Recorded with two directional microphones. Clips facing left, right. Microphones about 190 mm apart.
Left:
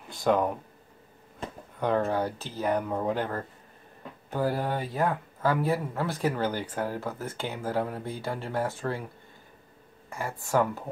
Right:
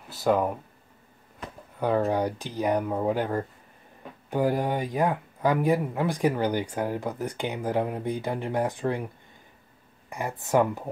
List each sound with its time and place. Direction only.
0.1 s speech: 5° right (ahead or behind)
1.8 s speech: 10° right (ahead or behind)
10.0 s speech: 20° right (ahead or behind)